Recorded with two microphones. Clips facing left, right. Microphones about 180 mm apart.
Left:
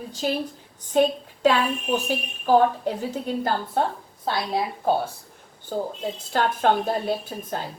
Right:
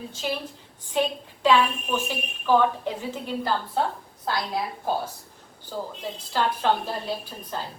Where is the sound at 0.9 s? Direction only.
45° left (ahead or behind).